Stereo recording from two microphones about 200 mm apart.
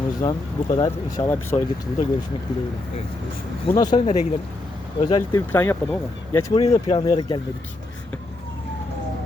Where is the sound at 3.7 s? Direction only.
20° left (ahead or behind).